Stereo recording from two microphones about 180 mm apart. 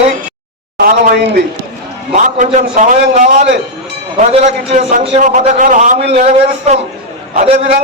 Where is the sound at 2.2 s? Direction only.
45° right (ahead or behind).